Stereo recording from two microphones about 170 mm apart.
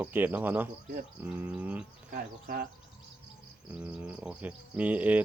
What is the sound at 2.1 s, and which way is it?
Speech, 60° right (ahead or behind).